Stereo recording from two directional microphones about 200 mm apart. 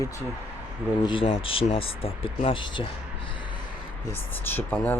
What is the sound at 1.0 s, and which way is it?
Speech, 25° left (ahead or behind).